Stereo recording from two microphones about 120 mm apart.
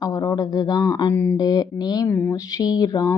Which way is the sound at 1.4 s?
35° left (ahead or behind).